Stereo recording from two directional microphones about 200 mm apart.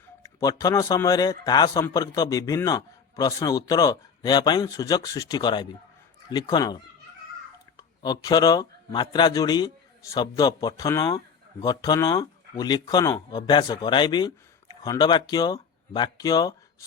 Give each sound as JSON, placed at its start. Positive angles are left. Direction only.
{"t": 0.2, "sound": "a man's voice", "side_deg": 15}